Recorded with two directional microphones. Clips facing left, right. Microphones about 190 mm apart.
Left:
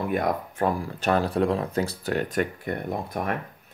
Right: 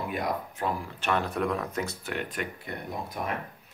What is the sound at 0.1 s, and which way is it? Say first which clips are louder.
Speech: left 5 dB; 50° left (ahead or behind).